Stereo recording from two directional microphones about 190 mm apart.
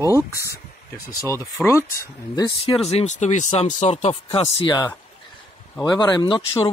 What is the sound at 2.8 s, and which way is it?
Speech, 35° left (ahead or behind).